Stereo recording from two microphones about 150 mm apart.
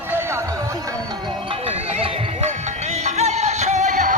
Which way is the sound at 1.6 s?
40° right (ahead or behind).